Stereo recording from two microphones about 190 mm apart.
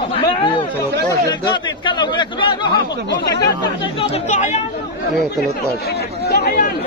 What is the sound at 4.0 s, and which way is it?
Speech, 35° left (ahead or behind).